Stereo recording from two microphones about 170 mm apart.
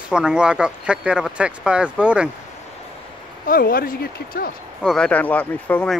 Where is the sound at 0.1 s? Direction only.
5° right (ahead or behind).